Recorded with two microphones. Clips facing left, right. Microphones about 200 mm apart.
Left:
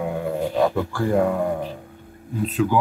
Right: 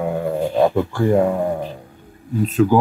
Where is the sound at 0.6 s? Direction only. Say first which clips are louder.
Right 5 dB; 25° right (ahead or behind).